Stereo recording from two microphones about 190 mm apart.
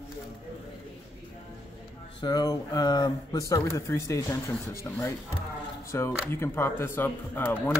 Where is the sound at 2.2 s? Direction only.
20° left (ahead or behind).